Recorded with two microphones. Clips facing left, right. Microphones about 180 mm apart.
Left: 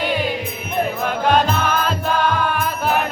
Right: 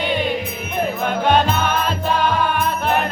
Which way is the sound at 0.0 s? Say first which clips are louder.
Even; centre (ahead or behind).